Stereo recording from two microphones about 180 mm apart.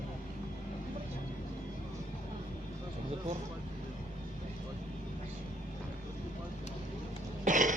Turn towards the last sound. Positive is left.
turn(degrees=-45)  # may be behind; listen again after turning